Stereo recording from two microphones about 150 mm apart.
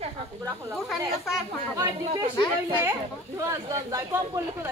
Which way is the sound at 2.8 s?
20° right (ahead or behind).